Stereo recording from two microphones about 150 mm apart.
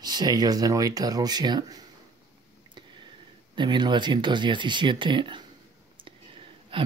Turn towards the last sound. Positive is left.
turn(degrees=-35)  # may be behind; listen again after turning